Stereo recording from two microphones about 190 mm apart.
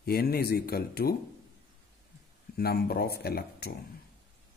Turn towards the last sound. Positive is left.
turn(degrees=55)  # may be behind; listen again after turning